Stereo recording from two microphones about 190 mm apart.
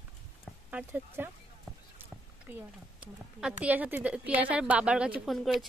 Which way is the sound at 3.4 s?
5° right (ahead or behind).